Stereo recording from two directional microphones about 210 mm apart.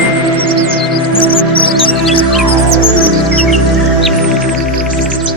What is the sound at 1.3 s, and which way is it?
Music, 25° left (ahead or behind).